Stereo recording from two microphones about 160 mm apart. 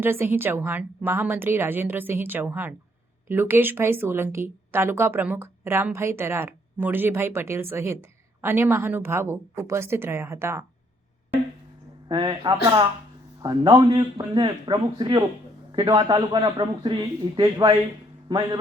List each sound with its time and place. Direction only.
0.0 s speech: 15° right (ahead or behind)
12.0 s a man's voice: 30° right (ahead or behind)